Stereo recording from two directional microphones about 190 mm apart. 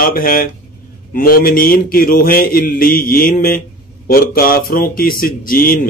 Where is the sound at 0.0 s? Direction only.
50° left (ahead or behind).